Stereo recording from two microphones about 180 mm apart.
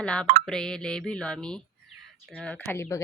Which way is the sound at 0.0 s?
5° left (ahead or behind).